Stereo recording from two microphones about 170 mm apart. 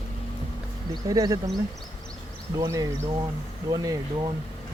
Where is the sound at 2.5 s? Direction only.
20° right (ahead or behind).